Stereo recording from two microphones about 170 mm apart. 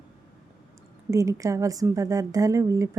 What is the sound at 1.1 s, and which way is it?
A woman's voice, 20° right (ahead or behind).